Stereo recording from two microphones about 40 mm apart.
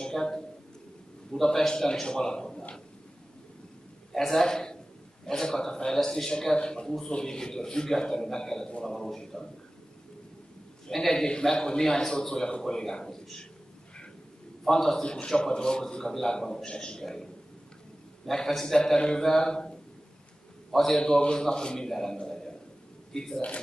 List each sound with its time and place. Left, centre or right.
0.0 s a sound: centre
1.3 s a man's voice: centre
4.1 s a man's voice: centre
10.9 s a man's voice: centre
14.6 s a man's voice: centre
20.7 s a man's voice: centre
21.0 s a man's voice: centre